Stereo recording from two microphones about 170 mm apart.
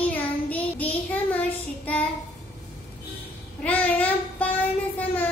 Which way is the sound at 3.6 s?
10° left (ahead or behind).